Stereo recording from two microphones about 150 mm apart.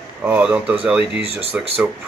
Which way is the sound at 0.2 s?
10° right (ahead or behind).